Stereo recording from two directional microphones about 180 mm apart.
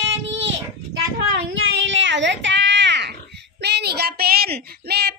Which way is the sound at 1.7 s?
90° right.